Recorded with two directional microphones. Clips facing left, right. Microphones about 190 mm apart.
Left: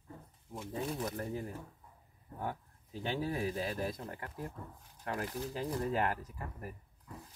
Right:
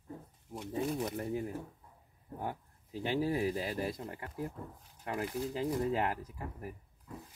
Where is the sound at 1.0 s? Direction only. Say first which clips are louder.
Right 2 dB; 20° right (ahead or behind).